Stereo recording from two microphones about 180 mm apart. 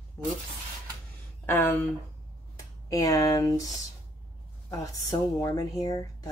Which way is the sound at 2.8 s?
20° left (ahead or behind).